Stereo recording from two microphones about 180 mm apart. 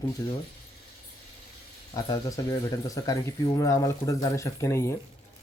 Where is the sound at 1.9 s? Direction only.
20° left (ahead or behind).